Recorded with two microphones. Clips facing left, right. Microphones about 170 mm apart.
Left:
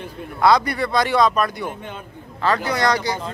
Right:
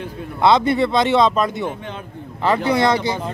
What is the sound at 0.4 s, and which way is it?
Speech, 25° right (ahead or behind).